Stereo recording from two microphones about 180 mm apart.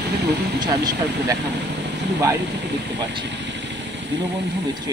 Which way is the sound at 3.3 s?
80° right.